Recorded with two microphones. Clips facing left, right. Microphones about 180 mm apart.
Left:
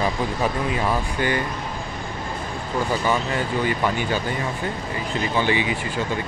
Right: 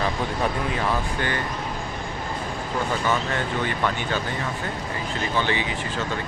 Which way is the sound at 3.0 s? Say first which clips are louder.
Left 2 dB; 10° left (ahead or behind).